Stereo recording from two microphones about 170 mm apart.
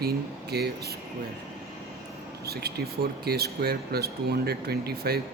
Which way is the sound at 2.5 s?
70° right (ahead or behind).